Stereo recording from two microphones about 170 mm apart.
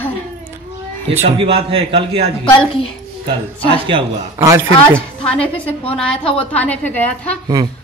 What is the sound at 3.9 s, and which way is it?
Speech, 30° right (ahead or behind).